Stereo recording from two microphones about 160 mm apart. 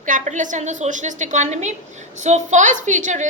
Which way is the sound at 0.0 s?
50° right (ahead or behind).